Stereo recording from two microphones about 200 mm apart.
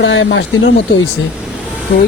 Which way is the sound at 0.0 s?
65° left (ahead or behind).